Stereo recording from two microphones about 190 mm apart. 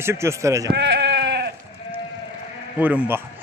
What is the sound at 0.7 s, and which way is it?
Sheep, 65° right (ahead or behind).